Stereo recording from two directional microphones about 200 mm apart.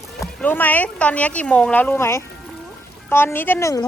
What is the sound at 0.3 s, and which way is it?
Speech, 10° left (ahead or behind).